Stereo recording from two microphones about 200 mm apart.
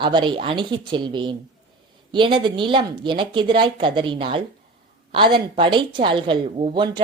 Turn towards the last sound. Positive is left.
turn(degrees=-25)  # may be behind; listen again after turning